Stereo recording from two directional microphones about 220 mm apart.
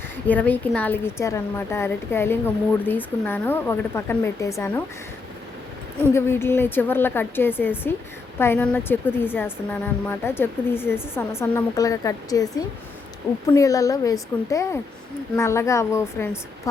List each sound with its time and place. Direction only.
0.3 s a woman's voice: 5° left (ahead or behind)
6.1 s a woman's voice: 10° left (ahead or behind)